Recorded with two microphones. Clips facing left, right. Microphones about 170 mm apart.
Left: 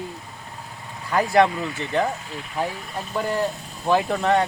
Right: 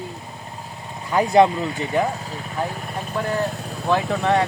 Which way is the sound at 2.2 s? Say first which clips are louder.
Right 1 dB; 40° right (ahead or behind).